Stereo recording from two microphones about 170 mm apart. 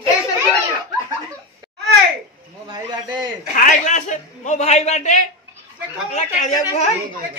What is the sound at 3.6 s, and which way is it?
A man's voice, 45° left (ahead or behind).